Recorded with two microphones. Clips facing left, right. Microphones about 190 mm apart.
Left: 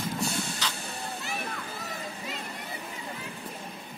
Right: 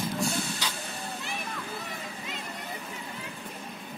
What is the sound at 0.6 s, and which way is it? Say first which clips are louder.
Vehicle: even; 10° right (ahead or behind).